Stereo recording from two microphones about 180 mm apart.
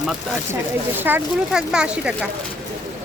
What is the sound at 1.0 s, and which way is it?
Speech, 5° right (ahead or behind).